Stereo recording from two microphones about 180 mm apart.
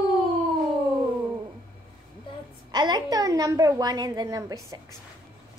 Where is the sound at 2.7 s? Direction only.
25° right (ahead or behind).